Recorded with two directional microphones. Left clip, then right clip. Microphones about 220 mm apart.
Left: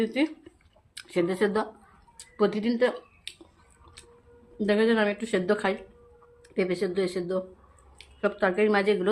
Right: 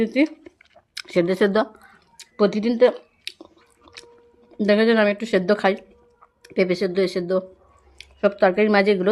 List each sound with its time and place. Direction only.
0.0 s speech: 35° right (ahead or behind)
2.1 s a sound: 35° right (ahead or behind)
4.5 s speech: 45° right (ahead or behind)